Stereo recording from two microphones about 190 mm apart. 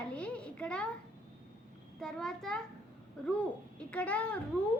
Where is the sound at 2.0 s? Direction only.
5° left (ahead or behind).